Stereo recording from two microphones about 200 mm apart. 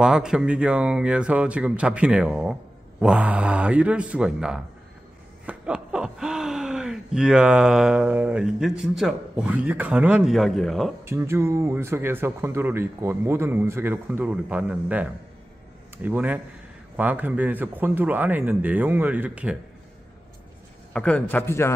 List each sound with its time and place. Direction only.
0.0 s speech: 5° right (ahead or behind)
11.1 s speech: 15° right (ahead or behind)
20.9 s a man's voice: 5° left (ahead or behind)